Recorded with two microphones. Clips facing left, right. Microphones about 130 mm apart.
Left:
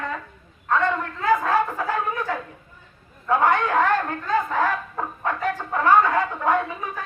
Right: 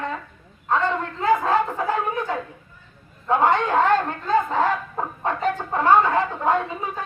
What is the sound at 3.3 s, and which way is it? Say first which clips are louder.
Speech: right 1 dB; 20° right (ahead or behind).